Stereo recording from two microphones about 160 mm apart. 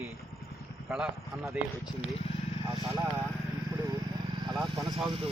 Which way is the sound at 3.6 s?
25° right (ahead or behind).